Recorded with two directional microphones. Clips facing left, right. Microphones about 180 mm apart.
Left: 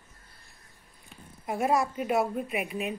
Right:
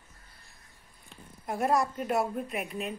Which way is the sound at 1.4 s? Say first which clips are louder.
Left 1 dB; 5° left (ahead or behind).